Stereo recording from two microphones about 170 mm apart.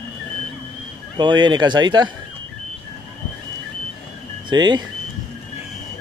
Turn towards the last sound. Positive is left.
turn(degrees=-25)  # may be behind; listen again after turning